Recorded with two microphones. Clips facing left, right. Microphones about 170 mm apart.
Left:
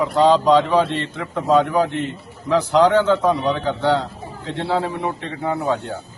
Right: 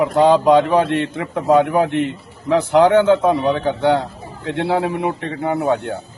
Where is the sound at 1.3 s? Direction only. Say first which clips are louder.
Right 2 dB; 15° right (ahead or behind).